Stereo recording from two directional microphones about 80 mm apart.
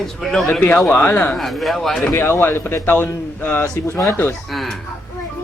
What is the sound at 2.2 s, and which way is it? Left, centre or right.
Speech, left.